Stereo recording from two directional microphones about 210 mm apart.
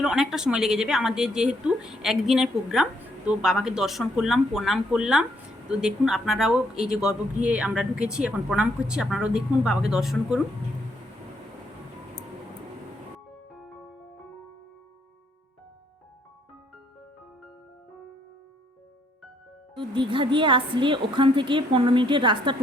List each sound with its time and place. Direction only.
0.0 s a woman's voice: centre (ahead or behind)
19.7 s a woman's voice: 25° right (ahead or behind)